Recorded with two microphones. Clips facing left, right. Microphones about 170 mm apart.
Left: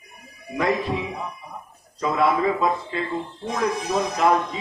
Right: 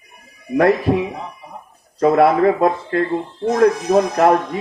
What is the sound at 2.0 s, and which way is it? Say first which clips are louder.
A man's voice: right 8 dB; 65° right (ahead or behind).